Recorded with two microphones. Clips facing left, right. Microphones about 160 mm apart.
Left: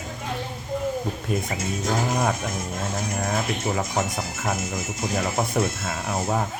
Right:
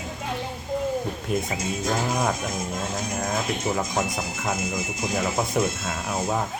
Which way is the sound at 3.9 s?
25° left (ahead or behind).